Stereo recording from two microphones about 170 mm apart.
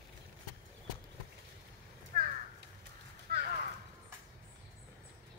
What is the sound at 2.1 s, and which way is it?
Crow, 55° right (ahead or behind).